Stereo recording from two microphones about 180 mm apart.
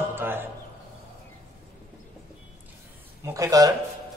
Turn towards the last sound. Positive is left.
turn(degrees=-20)  # may be behind; listen again after turning